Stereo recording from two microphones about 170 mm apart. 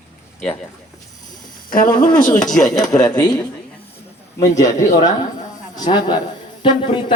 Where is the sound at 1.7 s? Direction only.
55° left (ahead or behind).